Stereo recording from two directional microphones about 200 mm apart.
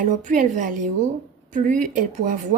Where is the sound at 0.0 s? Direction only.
40° right (ahead or behind).